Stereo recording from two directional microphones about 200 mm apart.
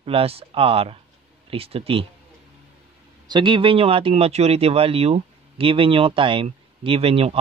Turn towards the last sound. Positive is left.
turn(degrees=-30)  # may be behind; listen again after turning